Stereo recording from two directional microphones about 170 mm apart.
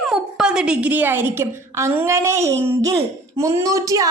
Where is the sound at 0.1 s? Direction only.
5° right (ahead or behind).